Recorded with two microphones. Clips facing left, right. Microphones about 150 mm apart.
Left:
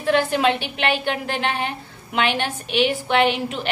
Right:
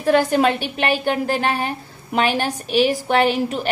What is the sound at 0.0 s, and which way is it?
A woman's voice, 45° right (ahead or behind).